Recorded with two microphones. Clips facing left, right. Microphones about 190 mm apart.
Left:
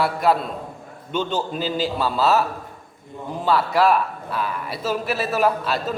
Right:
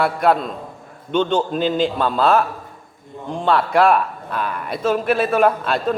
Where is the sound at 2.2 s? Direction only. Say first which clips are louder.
Right 3 dB; 50° right (ahead or behind).